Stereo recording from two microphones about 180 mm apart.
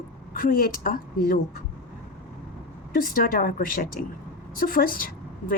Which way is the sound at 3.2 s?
50° left (ahead or behind).